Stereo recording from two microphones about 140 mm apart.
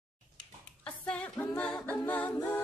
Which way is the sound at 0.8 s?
10° left (ahead or behind).